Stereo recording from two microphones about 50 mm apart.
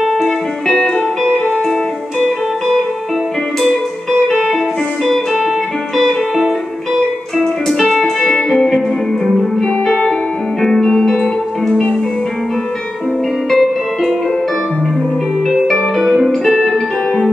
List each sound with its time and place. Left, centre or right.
0.0 s music: centre
0.7 s music: centre
4.3 s music: centre
7.3 s music: centre
13.5 s music: centre
15.7 s music: centre